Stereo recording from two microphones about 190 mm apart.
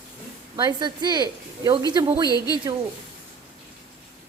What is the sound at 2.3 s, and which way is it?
Speech, 20° left (ahead or behind).